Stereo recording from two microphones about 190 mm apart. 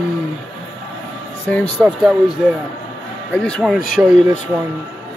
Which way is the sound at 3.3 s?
5° left (ahead or behind).